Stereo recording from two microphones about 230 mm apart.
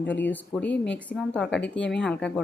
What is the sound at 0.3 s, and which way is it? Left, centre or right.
A woman's voice, centre.